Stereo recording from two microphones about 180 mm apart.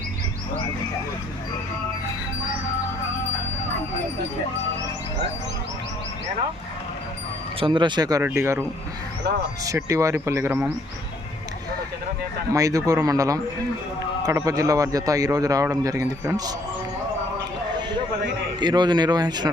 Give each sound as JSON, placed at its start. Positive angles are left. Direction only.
{"t": 7.6, "sound": "a man's voice", "side_deg": -25}
{"t": 9.6, "sound": "speech", "side_deg": -15}
{"t": 12.5, "sound": "a man's voice", "side_deg": -20}
{"t": 18.6, "sound": "a man's voice", "side_deg": -25}